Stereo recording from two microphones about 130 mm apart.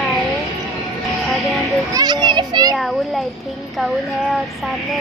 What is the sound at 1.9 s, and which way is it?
Speech, 35° right (ahead or behind).